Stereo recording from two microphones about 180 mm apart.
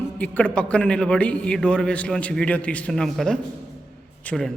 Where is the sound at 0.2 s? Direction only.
5° left (ahead or behind).